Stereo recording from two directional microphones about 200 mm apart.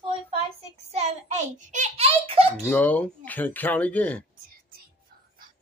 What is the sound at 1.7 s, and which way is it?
Speech, 35° right (ahead or behind).